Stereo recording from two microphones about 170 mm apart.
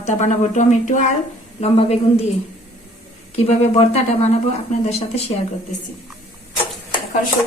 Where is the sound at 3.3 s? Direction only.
40° left (ahead or behind).